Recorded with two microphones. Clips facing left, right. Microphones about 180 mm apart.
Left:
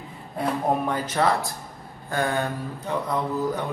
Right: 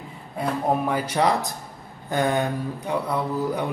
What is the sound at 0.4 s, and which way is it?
Speech, 10° right (ahead or behind).